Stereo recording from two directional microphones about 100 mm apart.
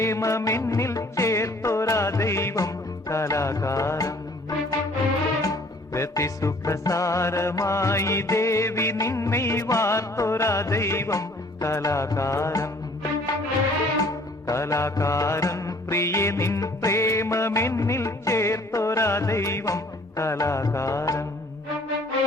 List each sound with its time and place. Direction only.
0.0 s music: 30° left (ahead or behind)